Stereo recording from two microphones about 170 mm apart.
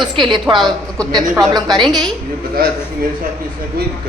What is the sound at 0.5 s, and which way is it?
Speech, centre (ahead or behind).